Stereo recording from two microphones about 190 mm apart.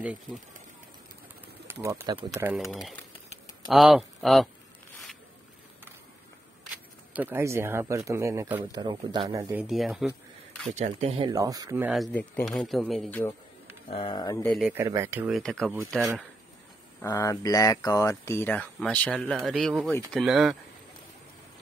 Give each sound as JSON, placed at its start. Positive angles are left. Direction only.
{"t": 1.7, "sound": "speech", "side_deg": -15}
{"t": 2.7, "sound": "speech", "side_deg": 0}
{"t": 7.2, "sound": "speech", "side_deg": -10}
{"t": 8.7, "sound": "speech", "side_deg": -25}
{"t": 10.7, "sound": "speech", "side_deg": -35}
{"t": 11.8, "sound": "speech", "side_deg": 0}
{"t": 13.9, "sound": "speech", "side_deg": 25}
{"t": 14.4, "sound": "speech", "side_deg": 5}
{"t": 14.7, "sound": "speech", "side_deg": -15}
{"t": 17.0, "sound": "speech", "side_deg": 15}